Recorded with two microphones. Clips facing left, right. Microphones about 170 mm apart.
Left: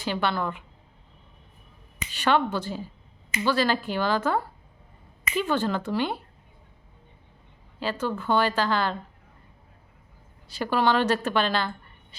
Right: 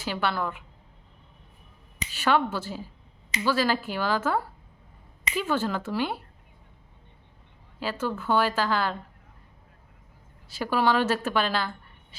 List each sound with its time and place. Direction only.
0.0 s a woman's voice: 5° right (ahead or behind)
2.1 s a woman's voice: 5° right (ahead or behind)
7.8 s a woman's voice: 5° right (ahead or behind)
10.5 s a woman's voice: 5° right (ahead or behind)